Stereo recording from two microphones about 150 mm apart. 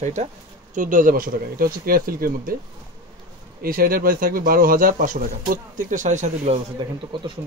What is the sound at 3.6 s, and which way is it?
Speech, 75° right (ahead or behind).